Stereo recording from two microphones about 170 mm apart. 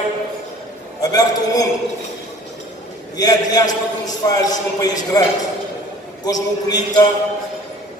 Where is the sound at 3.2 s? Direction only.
20° left (ahead or behind).